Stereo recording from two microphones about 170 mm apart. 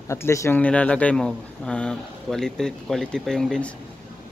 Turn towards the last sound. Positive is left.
turn(degrees=5)  # may be behind; listen again after turning